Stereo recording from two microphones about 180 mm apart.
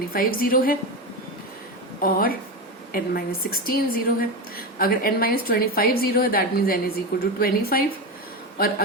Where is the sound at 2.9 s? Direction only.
55° left (ahead or behind).